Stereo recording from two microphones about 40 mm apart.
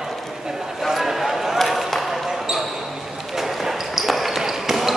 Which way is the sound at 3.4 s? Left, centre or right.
Centre.